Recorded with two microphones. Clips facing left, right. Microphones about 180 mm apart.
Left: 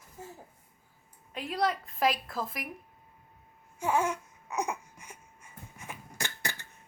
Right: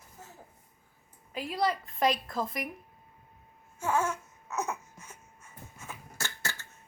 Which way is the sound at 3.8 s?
15° left (ahead or behind).